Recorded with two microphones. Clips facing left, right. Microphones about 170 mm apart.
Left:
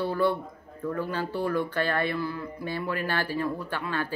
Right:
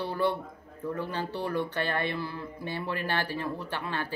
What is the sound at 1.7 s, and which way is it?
A woman's voice, 20° right (ahead or behind).